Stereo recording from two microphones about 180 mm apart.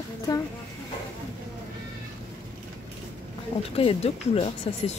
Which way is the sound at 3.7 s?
35° left (ahead or behind).